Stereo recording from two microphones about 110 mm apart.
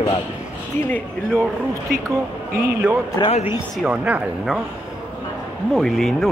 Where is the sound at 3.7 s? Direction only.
10° right (ahead or behind).